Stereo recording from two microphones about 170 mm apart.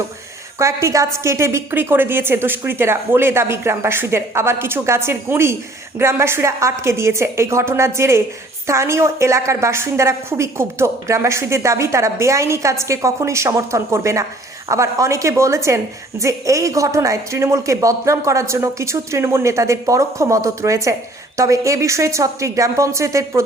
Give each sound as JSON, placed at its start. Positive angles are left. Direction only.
{"t": 0.6, "sound": "a woman's voice", "side_deg": -15}